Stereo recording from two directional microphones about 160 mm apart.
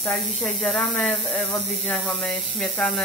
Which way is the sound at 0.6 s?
5° left (ahead or behind).